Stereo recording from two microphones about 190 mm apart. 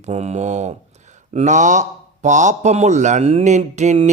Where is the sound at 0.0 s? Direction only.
35° right (ahead or behind).